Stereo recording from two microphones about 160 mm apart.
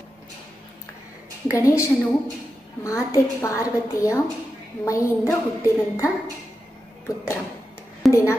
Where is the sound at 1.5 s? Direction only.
20° left (ahead or behind).